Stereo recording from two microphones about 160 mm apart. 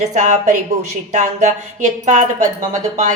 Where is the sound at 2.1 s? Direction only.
55° right (ahead or behind).